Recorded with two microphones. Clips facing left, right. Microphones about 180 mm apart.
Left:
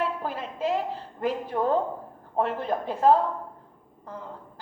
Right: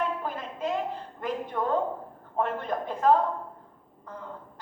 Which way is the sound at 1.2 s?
35° left (ahead or behind).